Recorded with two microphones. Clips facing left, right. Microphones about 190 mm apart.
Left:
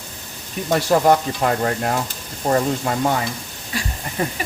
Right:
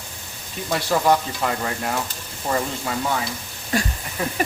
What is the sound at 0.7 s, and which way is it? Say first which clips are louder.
Speech: left 4 dB; 45° left (ahead or behind).